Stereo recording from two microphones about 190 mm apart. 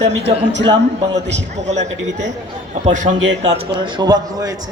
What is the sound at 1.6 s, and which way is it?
Speech, 35° right (ahead or behind).